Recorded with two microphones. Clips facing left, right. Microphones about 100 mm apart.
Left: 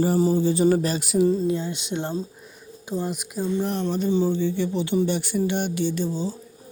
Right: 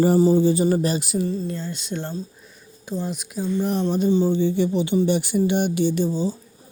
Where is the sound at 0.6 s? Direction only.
5° right (ahead or behind).